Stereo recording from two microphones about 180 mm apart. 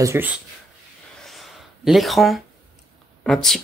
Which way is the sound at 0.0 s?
15° right (ahead or behind).